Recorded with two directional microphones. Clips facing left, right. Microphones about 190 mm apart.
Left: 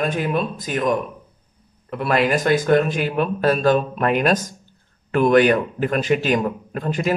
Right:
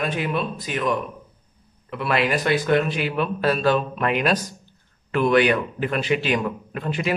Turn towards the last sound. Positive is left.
turn(degrees=45)  # may be behind; listen again after turning